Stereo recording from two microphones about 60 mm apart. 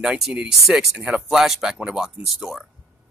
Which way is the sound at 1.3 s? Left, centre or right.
Centre.